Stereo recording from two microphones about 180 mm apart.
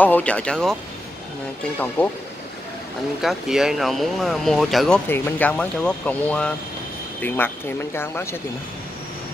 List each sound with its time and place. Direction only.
0.0 s speech: 10° left (ahead or behind)
2.0 s speech: 10° left (ahead or behind)
3.2 s speech: centre (ahead or behind); by 8.4 s 15° left (ahead or behind)